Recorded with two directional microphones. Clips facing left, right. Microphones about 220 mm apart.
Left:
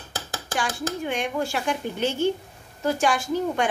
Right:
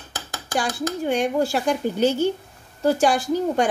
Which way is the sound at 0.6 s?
40° right (ahead or behind).